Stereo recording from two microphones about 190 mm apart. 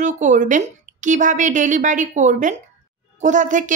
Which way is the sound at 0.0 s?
40° right (ahead or behind).